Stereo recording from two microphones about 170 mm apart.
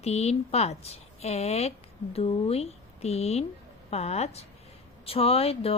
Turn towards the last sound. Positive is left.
turn(degrees=35)  # may be behind; listen again after turning